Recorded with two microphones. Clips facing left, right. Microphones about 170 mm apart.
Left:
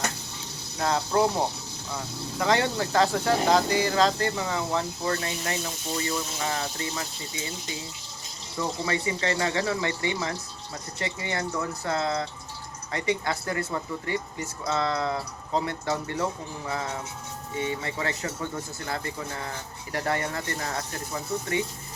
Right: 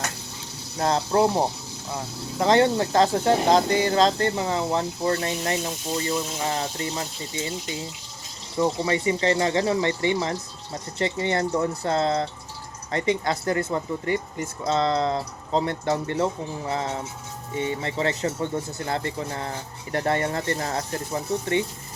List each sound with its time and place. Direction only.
0.8 s speech: 25° right (ahead or behind)
2.4 s speech: 25° right (ahead or behind)
5.9 s speech: 20° right (ahead or behind)
8.6 s speech: 25° right (ahead or behind)